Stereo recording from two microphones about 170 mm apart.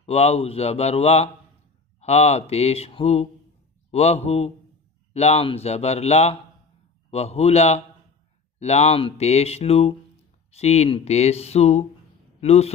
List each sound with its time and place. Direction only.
0.0 s speech: 40° left (ahead or behind)